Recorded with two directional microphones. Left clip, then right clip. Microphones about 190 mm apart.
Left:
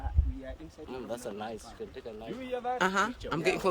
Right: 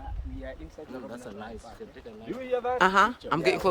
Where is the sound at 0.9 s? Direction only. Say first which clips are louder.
Left 3 dB; 45° left (ahead or behind).